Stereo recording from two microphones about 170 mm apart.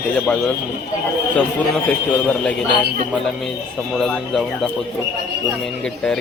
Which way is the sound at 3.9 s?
Centre (ahead or behind).